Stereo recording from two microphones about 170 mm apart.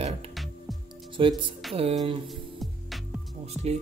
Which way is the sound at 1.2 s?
30° right (ahead or behind).